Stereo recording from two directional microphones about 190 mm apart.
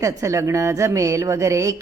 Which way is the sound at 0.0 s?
15° right (ahead or behind).